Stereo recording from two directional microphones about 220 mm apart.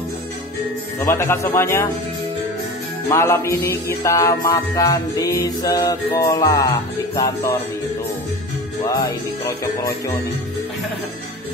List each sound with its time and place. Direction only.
1.0 s music: 10° left (ahead or behind)
3.1 s music: 15° left (ahead or behind)
8.8 s music: 15° left (ahead or behind)